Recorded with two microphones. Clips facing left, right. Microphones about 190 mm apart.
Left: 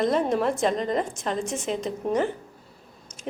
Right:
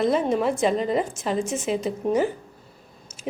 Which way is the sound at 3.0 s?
5° right (ahead or behind).